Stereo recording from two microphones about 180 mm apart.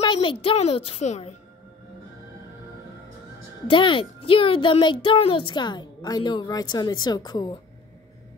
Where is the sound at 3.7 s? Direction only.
30° left (ahead or behind).